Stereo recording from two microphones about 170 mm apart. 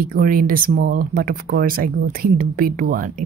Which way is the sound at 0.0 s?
55° right (ahead or behind).